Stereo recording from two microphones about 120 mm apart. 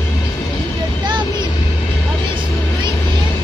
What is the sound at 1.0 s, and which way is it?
Vehicle, 40° right (ahead or behind).